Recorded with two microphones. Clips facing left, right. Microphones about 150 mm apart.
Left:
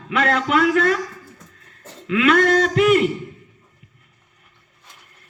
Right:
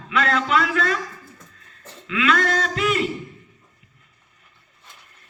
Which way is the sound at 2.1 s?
55° left (ahead or behind).